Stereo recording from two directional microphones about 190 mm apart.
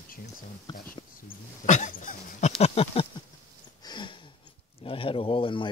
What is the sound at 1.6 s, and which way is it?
Dog, 40° left (ahead or behind).